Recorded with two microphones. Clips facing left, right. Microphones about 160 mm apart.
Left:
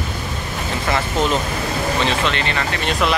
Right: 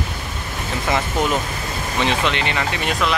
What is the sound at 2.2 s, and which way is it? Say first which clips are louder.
Speech: even; 15° right (ahead or behind).